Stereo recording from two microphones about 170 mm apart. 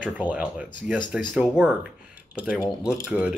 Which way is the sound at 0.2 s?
10° right (ahead or behind).